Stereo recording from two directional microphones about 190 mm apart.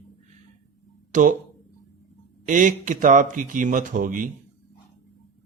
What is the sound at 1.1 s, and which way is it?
Speech, 40° right (ahead or behind).